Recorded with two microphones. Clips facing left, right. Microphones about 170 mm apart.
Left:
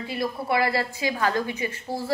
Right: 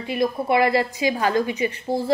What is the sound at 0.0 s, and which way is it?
A woman's voice, 20° right (ahead or behind).